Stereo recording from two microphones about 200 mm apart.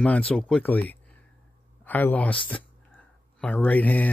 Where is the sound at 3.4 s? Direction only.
5° left (ahead or behind).